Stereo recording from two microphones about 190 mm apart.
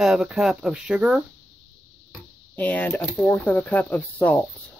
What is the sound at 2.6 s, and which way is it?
Speech, 10° left (ahead or behind).